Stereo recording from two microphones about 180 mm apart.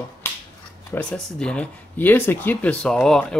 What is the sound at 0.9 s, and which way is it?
Speech, 5° left (ahead or behind).